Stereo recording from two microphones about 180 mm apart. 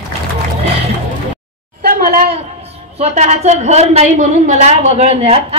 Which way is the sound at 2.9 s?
35° right (ahead or behind).